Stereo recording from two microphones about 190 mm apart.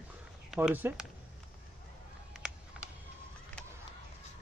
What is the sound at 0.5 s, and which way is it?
Speech, 5° right (ahead or behind).